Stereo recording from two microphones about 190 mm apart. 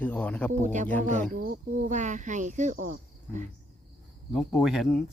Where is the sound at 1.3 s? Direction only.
45° right (ahead or behind).